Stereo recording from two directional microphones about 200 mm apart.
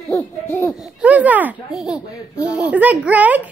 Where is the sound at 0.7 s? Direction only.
5° right (ahead or behind).